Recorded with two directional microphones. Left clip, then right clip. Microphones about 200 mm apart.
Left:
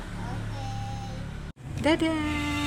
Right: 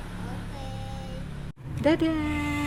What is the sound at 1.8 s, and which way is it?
Speech, 15° right (ahead or behind).